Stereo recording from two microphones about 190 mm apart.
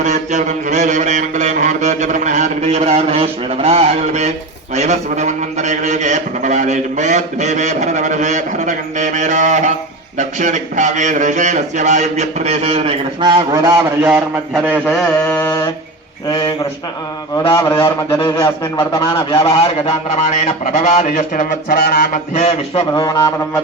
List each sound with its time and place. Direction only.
0.0 s a man's voice: 40° right (ahead or behind); by 14.1 s 20° right (ahead or behind)
14.7 s mantra: 5° left (ahead or behind)
15.4 s mantra: 15° left (ahead or behind)
17.3 s a man's voice: 20° left (ahead or behind); by 21.8 s 40° left (ahead or behind)
21.8 s mantra: 50° left (ahead or behind)
22.4 s a man's voice: 30° left (ahead or behind)